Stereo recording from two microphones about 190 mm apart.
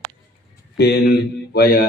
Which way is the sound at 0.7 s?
60° left (ahead or behind).